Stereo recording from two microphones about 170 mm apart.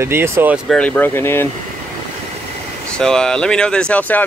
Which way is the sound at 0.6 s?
5° left (ahead or behind).